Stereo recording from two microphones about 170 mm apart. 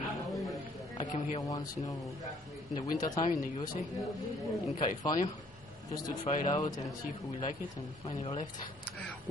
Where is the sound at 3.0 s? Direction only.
40° left (ahead or behind).